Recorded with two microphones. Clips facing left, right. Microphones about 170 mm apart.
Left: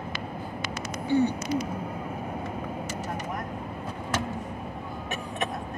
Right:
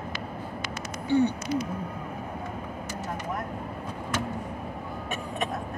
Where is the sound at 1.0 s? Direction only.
50° left (ahead or behind).